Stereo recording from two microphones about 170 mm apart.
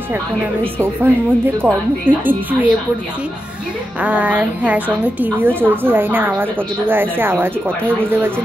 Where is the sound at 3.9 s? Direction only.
10° right (ahead or behind).